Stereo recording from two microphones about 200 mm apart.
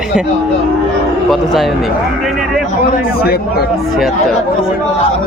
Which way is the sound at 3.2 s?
50° left (ahead or behind).